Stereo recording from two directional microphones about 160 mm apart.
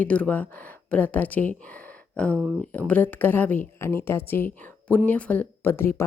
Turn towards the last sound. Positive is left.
turn(degrees=15)  # may be behind; listen again after turning